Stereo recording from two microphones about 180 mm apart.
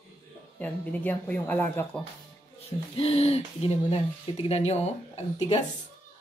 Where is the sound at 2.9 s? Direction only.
35° left (ahead or behind).